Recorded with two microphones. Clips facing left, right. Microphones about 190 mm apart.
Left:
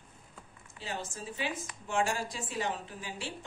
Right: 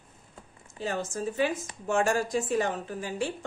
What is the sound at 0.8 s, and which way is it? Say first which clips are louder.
A woman's voice: right 9 dB; 45° right (ahead or behind).